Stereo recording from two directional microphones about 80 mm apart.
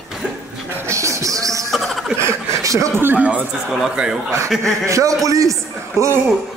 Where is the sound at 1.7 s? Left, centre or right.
Centre.